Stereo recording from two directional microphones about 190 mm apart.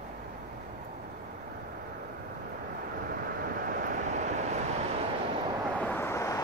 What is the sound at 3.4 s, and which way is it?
Vehicle, 50° right (ahead or behind).